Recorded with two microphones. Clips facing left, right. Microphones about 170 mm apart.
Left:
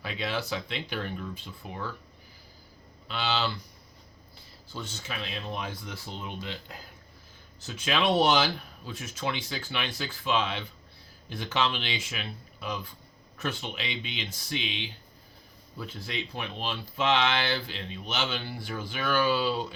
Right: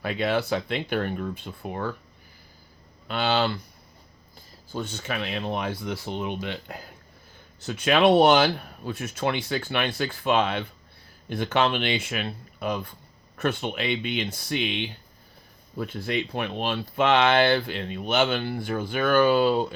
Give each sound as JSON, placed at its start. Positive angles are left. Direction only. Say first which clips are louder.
{"t": 0.0, "sound": "speech", "louder": "right 8 dB", "side_deg": -55}
{"t": 3.1, "sound": "speech", "louder": "right 6 dB", "side_deg": -55}